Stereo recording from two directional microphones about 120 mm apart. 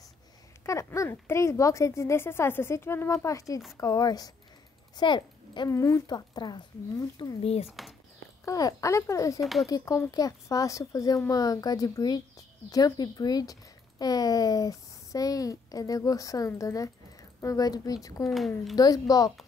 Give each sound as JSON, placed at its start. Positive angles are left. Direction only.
{"t": 0.7, "sound": "a woman's voice", "side_deg": 25}
{"t": 5.7, "sound": "a woman's voice", "side_deg": 25}
{"t": 7.4, "sound": "speech", "side_deg": 60}
{"t": 8.5, "sound": "speech", "side_deg": 30}
{"t": 9.4, "sound": "speech", "side_deg": 0}
{"t": 9.7, "sound": "a woman's voice", "side_deg": 30}